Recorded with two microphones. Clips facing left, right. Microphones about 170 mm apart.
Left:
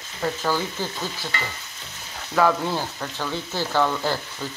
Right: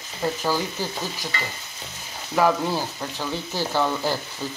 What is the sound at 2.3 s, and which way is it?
Speech, 15° right (ahead or behind).